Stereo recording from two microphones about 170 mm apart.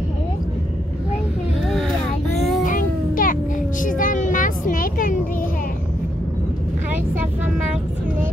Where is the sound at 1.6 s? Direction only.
Centre (ahead or behind).